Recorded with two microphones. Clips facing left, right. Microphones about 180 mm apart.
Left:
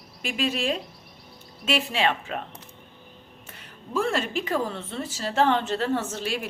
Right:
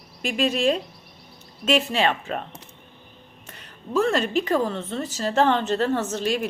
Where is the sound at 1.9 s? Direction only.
40° right (ahead or behind).